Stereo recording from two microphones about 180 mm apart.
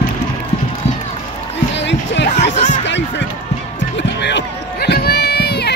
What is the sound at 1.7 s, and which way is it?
Music, 75° left (ahead or behind).